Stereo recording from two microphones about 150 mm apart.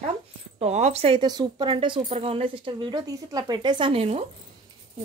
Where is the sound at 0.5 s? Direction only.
50° right (ahead or behind).